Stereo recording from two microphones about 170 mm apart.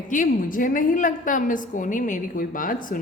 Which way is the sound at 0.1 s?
50° left (ahead or behind).